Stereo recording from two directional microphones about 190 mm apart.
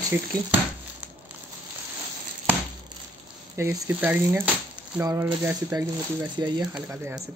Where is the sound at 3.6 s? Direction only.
15° right (ahead or behind).